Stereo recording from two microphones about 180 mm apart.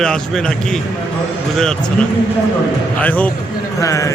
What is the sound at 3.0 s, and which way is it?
A man's voice, 10° left (ahead or behind).